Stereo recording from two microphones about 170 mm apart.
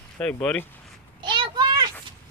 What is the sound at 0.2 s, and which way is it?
Speech, 5° left (ahead or behind).